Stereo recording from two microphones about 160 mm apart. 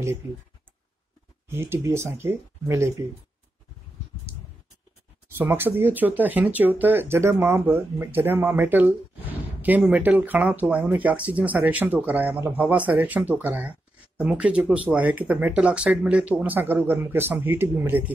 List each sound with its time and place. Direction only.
1.5 s speech: 15° right (ahead or behind)
5.4 s speech: 15° right (ahead or behind)